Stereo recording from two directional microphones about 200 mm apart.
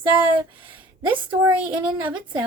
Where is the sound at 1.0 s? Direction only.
25° right (ahead or behind).